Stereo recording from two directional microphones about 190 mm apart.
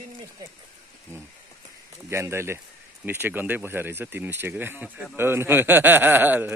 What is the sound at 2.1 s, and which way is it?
A man's voice, 15° right (ahead or behind).